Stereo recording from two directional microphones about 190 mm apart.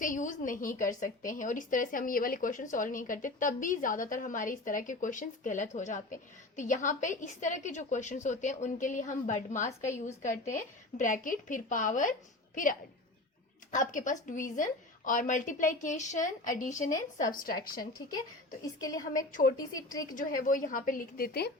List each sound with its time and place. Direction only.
0.0 s a woman's voice: 45° left (ahead or behind)
13.7 s a woman's voice: 40° left (ahead or behind)
18.6 s a woman's voice: 20° left (ahead or behind)
19.3 s a woman's voice: 45° left (ahead or behind)
19.5 s a woman's voice: 20° left (ahead or behind)
20.1 s a woman's voice: 45° left (ahead or behind)